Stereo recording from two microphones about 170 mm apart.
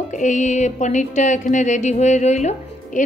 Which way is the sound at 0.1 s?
45° left (ahead or behind).